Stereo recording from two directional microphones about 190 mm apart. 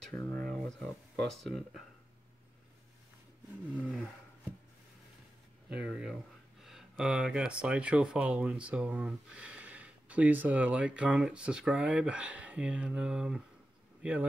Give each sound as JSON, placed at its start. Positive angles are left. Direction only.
{"t": 0.1, "sound": "speech", "side_deg": 10}
{"t": 3.7, "sound": "speech", "side_deg": -5}
{"t": 5.7, "sound": "speech", "side_deg": -5}